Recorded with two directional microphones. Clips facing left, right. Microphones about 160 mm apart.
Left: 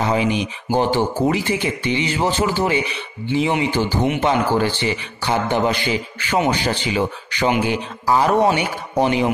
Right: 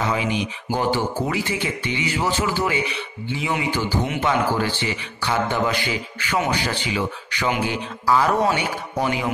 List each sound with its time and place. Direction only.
0.7 s speech: 25° left (ahead or behind)